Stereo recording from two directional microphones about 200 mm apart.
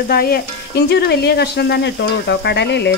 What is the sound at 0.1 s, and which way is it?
Speech, 50° left (ahead or behind).